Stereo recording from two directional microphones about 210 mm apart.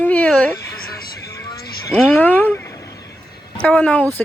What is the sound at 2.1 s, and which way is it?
Speech, 10° left (ahead or behind).